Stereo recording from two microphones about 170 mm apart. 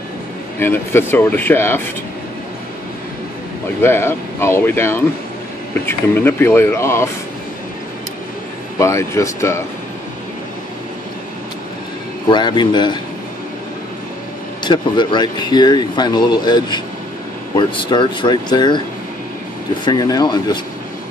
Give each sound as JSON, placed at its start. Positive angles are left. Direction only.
{"t": 0.6, "sound": "speech", "side_deg": 15}
{"t": 3.8, "sound": "speech", "side_deg": 15}
{"t": 8.7, "sound": "speech", "side_deg": 15}
{"t": 12.3, "sound": "speech", "side_deg": 25}
{"t": 14.6, "sound": "speech", "side_deg": 25}
{"t": 19.8, "sound": "speech", "side_deg": 25}